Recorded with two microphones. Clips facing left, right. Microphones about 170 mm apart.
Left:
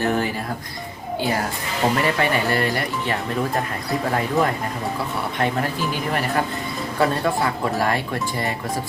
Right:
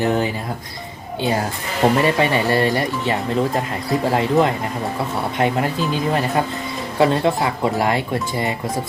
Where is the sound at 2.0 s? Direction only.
20° right (ahead or behind).